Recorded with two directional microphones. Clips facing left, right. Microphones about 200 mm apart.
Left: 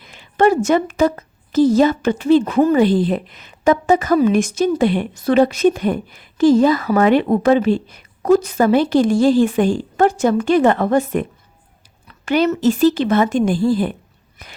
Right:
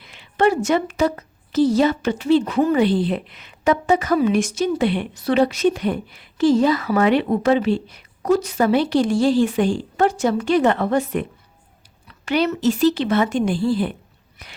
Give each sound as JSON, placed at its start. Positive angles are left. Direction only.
{"t": 0.0, "sound": "a woman's voice", "side_deg": 45}